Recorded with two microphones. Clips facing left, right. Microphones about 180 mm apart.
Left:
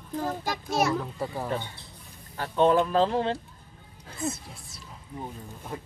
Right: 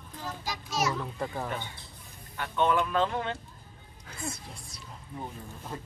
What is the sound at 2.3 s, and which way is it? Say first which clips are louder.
Speech: left 5 dB; 35° left (ahead or behind).